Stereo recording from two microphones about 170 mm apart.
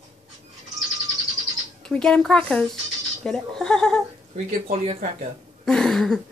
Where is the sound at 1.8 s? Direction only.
5° left (ahead or behind).